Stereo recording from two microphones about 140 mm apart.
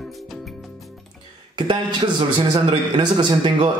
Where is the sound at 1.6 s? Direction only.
35° right (ahead or behind).